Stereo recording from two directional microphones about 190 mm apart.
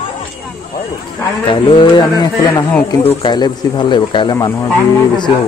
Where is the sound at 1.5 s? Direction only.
25° left (ahead or behind).